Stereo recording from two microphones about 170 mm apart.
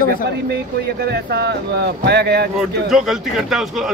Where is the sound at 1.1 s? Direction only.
75° right (ahead or behind).